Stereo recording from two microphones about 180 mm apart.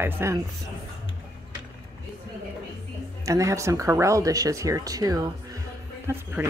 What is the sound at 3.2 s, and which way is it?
Speech, 15° right (ahead or behind).